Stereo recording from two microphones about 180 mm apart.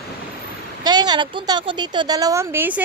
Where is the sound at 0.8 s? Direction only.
25° right (ahead or behind).